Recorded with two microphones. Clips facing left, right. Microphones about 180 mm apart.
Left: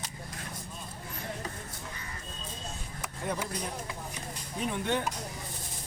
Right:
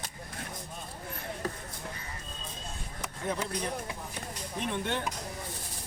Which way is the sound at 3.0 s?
10° left (ahead or behind).